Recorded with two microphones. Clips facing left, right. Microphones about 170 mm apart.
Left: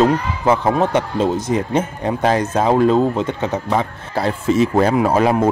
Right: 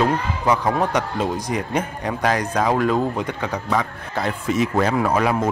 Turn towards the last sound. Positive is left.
turn(degrees=30)  # may be behind; listen again after turning